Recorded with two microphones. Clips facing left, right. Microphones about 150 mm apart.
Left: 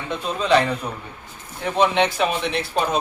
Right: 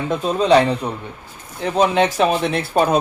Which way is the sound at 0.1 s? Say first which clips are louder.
Right 4 dB; 40° right (ahead or behind).